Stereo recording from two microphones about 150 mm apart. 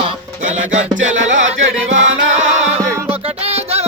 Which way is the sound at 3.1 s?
40° right (ahead or behind).